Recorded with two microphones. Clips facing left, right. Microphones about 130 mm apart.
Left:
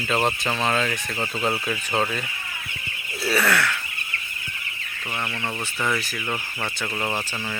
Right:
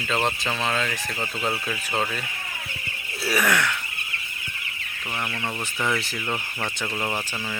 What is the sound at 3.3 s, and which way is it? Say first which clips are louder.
Speech: left 1 dB; 15° right (ahead or behind).